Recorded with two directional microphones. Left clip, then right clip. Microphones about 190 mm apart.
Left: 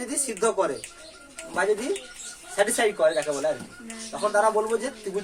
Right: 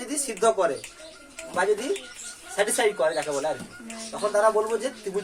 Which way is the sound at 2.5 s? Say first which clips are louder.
Left 1 dB; 15° left (ahead or behind).